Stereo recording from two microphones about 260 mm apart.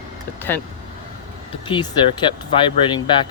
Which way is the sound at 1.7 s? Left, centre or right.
Centre.